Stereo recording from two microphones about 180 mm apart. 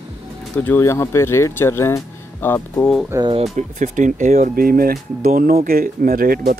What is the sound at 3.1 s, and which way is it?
Speech, 20° right (ahead or behind).